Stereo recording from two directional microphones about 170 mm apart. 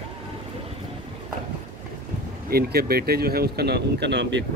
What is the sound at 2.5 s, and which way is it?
A man's voice, 65° right (ahead or behind).